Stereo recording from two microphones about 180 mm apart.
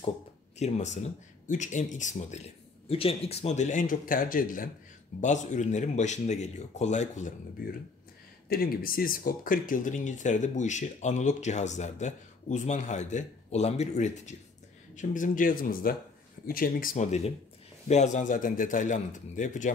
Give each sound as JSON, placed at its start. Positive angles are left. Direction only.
{"t": 0.6, "sound": "speech", "side_deg": 40}
{"t": 8.5, "sound": "speech", "side_deg": 55}